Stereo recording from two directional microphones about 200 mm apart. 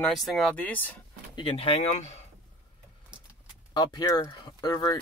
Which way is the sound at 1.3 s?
30° left (ahead or behind).